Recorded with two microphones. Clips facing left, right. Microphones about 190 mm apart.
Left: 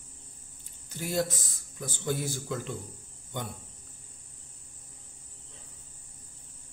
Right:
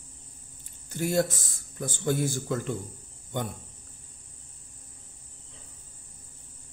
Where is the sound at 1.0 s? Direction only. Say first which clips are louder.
Right 4 dB; 50° right (ahead or behind).